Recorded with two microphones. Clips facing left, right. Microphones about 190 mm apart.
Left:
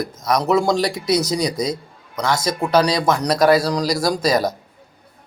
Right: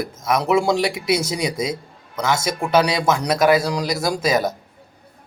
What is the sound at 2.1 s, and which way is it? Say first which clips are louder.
A man's voice: left 1 dB; 5° right (ahead or behind).